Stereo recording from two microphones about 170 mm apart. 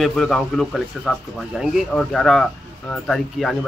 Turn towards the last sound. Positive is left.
turn(degrees=5)  # may be behind; listen again after turning